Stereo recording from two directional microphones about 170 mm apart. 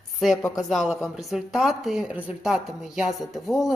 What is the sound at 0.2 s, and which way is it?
A woman's voice, centre (ahead or behind).